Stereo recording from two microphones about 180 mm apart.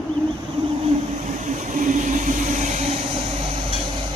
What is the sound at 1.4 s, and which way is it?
Vehicle, 45° right (ahead or behind).